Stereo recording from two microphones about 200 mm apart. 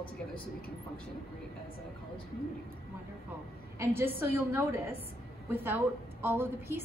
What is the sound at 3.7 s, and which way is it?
A woman's voice, 10° right (ahead or behind).